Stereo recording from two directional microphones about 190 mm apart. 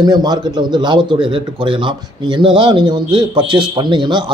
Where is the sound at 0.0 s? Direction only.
20° right (ahead or behind).